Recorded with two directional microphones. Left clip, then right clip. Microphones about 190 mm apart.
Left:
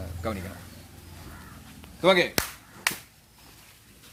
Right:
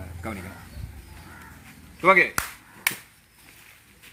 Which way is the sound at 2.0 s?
90° left.